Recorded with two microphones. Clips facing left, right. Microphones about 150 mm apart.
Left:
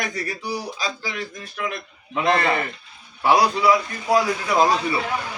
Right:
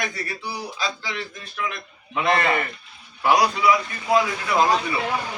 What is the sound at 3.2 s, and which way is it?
Speech, 30° left (ahead or behind).